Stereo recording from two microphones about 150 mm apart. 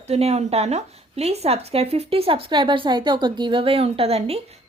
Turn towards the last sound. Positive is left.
turn(degrees=-40)  # may be behind; listen again after turning